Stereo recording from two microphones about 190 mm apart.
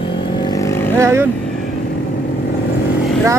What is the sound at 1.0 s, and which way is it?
Speech, 15° right (ahead or behind).